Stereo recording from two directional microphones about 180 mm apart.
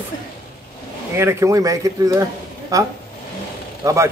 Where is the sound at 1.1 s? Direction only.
15° right (ahead or behind).